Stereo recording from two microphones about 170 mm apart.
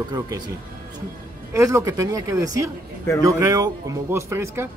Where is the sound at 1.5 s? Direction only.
20° right (ahead or behind).